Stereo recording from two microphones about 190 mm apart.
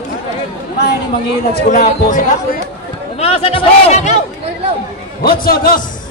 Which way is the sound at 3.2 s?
30° left (ahead or behind).